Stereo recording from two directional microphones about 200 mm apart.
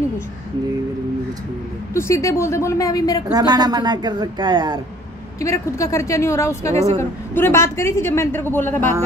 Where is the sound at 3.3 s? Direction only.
20° right (ahead or behind).